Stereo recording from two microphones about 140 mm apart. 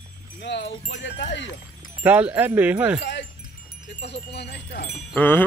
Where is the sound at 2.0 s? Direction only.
10° right (ahead or behind).